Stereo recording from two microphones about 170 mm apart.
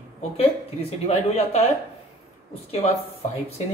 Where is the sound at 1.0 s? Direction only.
40° left (ahead or behind).